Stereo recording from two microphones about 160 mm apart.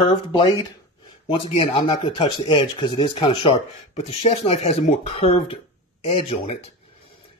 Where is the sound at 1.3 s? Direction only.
35° left (ahead or behind).